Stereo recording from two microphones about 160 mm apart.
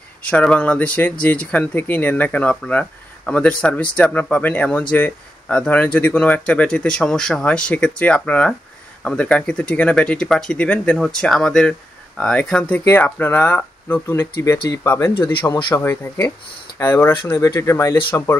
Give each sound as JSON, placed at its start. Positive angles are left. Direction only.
{"t": 0.2, "sound": "speech", "side_deg": 5}